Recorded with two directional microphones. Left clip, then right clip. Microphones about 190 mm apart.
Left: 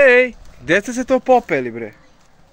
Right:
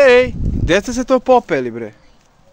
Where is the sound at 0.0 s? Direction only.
15° right (ahead or behind).